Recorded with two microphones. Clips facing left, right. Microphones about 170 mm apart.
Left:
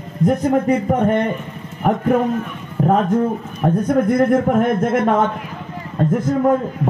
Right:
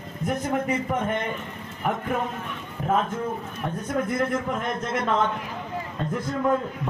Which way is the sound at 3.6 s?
55° left (ahead or behind).